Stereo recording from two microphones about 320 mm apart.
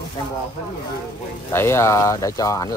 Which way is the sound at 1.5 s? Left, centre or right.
Centre.